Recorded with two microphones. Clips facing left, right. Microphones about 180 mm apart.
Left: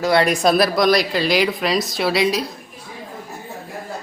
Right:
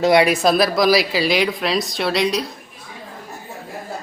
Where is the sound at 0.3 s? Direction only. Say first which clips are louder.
Even; centre (ahead or behind).